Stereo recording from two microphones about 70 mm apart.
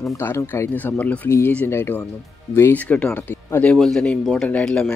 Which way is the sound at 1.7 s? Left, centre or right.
Left.